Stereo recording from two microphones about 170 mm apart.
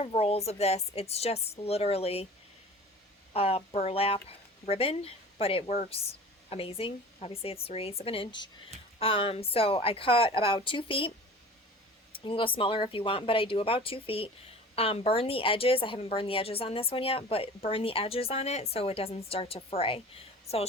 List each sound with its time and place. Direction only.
0.0 s a woman's voice: 35° left (ahead or behind)
3.3 s a woman's voice: 35° left (ahead or behind)
12.2 s a woman's voice: 30° left (ahead or behind)